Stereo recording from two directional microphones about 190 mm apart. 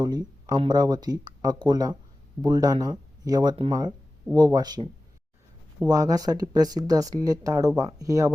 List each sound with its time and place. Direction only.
0.0 s speech: 20° right (ahead or behind)